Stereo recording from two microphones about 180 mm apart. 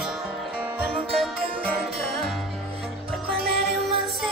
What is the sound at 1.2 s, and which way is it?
Music, centre (ahead or behind).